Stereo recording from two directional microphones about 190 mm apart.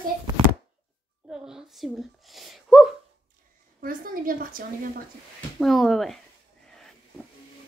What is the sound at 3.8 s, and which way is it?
Speech, 45° right (ahead or behind).